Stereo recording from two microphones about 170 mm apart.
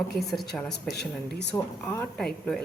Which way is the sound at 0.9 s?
75° left (ahead or behind).